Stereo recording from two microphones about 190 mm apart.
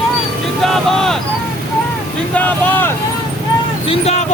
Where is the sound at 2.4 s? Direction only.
10° left (ahead or behind).